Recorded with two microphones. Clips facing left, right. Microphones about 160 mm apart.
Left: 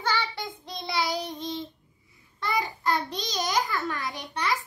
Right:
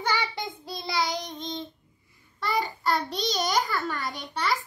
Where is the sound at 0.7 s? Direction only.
Centre (ahead or behind).